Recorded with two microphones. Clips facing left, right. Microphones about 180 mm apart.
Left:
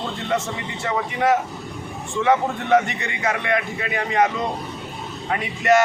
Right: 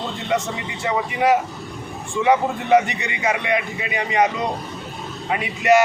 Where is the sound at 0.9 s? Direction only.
10° right (ahead or behind).